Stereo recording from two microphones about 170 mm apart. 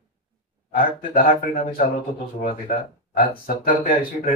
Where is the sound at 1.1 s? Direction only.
55° left (ahead or behind).